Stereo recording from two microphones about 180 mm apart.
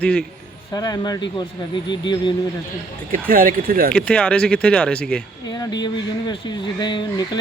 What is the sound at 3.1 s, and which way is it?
Speech, 50° right (ahead or behind).